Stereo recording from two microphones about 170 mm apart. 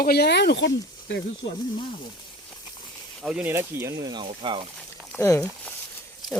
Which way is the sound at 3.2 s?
5° right (ahead or behind).